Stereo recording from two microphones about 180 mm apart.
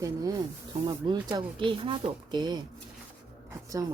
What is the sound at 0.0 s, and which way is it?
Speech, 20° right (ahead or behind).